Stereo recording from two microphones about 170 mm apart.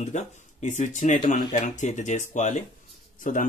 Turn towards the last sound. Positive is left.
turn(degrees=50)  # may be behind; listen again after turning